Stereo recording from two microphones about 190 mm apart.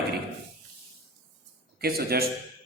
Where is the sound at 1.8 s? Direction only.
55° right (ahead or behind).